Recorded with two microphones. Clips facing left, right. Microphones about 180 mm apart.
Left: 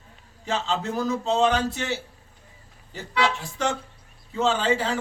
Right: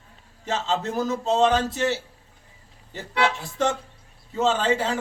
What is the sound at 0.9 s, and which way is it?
Speech, 5° right (ahead or behind).